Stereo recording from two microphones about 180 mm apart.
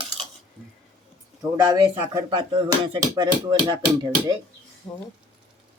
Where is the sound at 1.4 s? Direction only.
20° right (ahead or behind).